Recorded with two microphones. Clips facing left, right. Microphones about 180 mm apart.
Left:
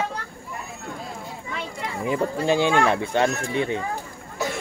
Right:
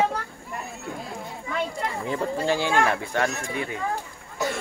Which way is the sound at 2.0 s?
15° left (ahead or behind).